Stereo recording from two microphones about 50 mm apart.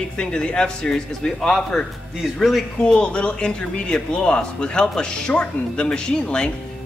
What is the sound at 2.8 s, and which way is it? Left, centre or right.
Speech, centre.